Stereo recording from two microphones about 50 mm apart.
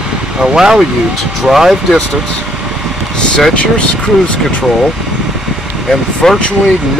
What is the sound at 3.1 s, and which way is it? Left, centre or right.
Speech, centre.